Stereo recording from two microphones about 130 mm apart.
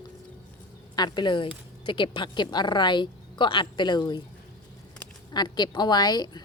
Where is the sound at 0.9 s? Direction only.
35° left (ahead or behind).